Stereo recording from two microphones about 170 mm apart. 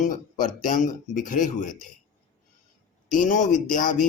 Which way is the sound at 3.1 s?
50° left (ahead or behind).